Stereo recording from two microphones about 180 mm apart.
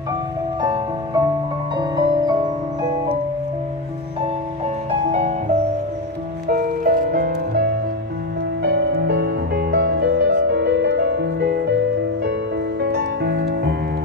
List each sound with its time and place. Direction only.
0.6 s music: 25° right (ahead or behind)
6.4 s music: 50° right (ahead or behind)
8.6 s music: 65° right (ahead or behind)
12.8 s music: 70° right (ahead or behind)